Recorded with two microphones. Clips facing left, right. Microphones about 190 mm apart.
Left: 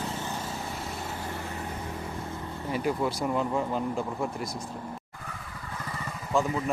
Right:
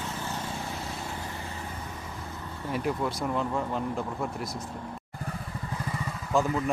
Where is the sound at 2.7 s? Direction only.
Centre (ahead or behind).